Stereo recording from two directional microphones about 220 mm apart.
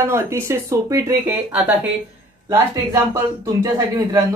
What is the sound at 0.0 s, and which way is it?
Speech, 10° right (ahead or behind).